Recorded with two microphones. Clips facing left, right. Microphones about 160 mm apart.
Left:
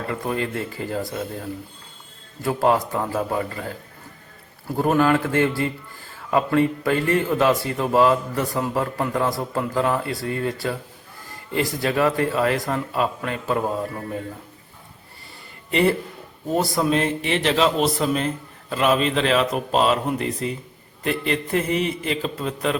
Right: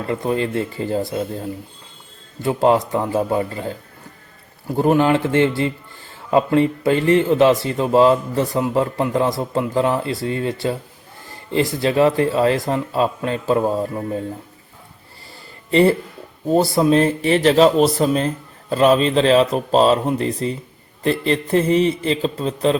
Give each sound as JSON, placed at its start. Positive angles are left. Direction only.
{"t": 0.1, "sound": "a man's voice", "side_deg": -25}
{"t": 4.8, "sound": "a man's voice", "side_deg": -25}
{"t": 15.7, "sound": "speech", "side_deg": -30}